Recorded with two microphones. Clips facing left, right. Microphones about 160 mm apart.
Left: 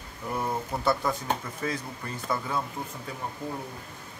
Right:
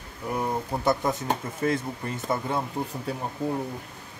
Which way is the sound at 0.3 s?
15° right (ahead or behind).